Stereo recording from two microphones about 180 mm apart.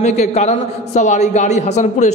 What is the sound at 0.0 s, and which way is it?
A man's voice, 40° left (ahead or behind).